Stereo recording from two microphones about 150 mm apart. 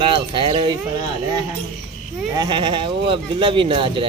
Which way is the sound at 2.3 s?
30° right (ahead or behind).